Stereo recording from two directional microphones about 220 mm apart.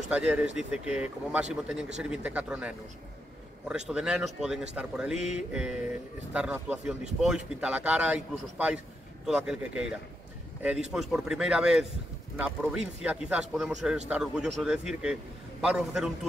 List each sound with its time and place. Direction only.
0.1 s a man's voice: 5° right (ahead or behind)